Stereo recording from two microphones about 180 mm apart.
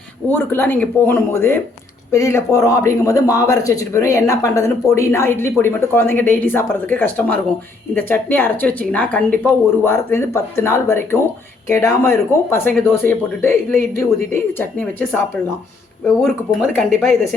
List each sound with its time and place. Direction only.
0.3 s speech: 10° left (ahead or behind)
14.6 s speech: 10° left (ahead or behind)
16.2 s speech: centre (ahead or behind)